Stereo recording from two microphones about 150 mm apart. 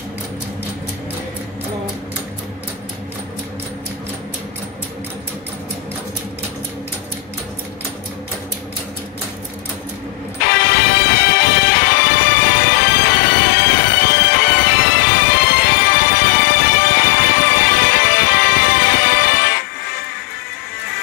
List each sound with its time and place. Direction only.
10.4 s music: 90° left